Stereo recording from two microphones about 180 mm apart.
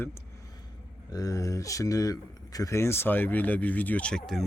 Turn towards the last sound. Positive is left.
turn(degrees=5)  # may be behind; listen again after turning